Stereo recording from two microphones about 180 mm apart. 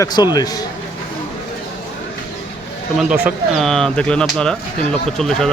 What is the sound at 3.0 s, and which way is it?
Speech, 5° right (ahead or behind).